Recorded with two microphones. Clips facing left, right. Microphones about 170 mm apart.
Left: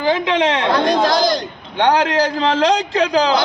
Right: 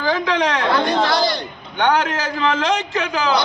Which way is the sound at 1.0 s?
40° left (ahead or behind).